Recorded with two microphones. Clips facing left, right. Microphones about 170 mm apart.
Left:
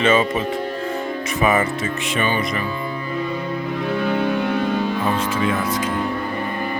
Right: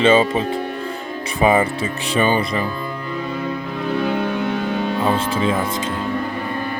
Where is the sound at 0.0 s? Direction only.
30° right (ahead or behind).